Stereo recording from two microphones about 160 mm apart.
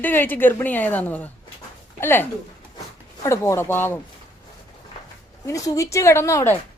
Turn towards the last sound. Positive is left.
turn(degrees=15)  # may be behind; listen again after turning